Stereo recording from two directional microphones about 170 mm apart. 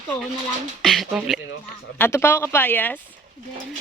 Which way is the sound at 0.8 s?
Centre (ahead or behind).